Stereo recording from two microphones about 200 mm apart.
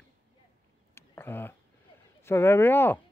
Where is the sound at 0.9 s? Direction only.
10° left (ahead or behind).